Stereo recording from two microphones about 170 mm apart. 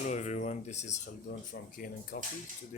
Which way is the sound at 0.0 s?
40° left (ahead or behind).